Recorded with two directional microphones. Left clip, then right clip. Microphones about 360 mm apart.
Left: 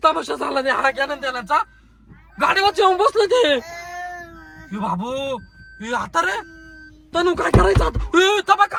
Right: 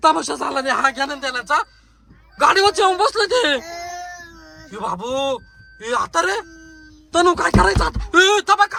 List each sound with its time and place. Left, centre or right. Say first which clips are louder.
0.0 s speech: right 2 dB; centre
3.6 s baby cry: right 2 dB; right
4.7 s speech: right 1 dB; centre